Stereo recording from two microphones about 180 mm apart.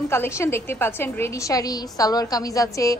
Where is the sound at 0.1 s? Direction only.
15° left (ahead or behind).